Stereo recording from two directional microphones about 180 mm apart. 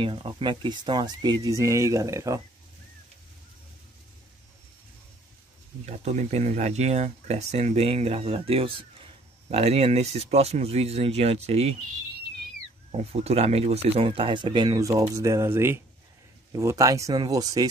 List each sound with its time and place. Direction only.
0.0 s speech: 30° right (ahead or behind)
5.9 s speech: 40° right (ahead or behind)
12.9 s speech: 35° right (ahead or behind)